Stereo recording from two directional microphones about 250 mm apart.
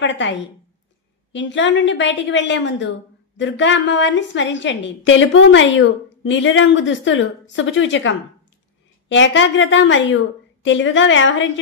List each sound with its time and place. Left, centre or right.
0.0 s a woman's voice: left